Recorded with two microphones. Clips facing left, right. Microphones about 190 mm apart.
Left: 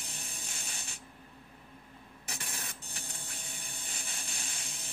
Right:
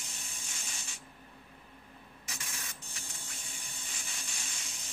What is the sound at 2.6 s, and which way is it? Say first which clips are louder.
Printer: left 3 dB; 60° left (ahead or behind).